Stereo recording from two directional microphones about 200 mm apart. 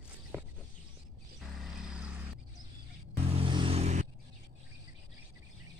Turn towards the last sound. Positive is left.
turn(degrees=-35)  # may be behind; listen again after turning